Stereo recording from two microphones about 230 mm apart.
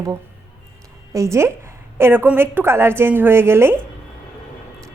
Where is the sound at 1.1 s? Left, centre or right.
Centre.